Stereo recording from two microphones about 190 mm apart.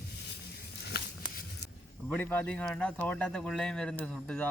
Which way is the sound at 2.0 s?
10° left (ahead or behind).